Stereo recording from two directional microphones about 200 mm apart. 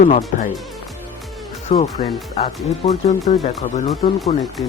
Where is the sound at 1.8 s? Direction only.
30° left (ahead or behind).